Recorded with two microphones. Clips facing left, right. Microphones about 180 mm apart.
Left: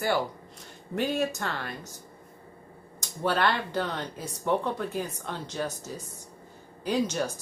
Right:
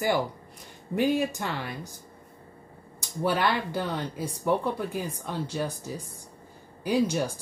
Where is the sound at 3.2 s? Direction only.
10° right (ahead or behind).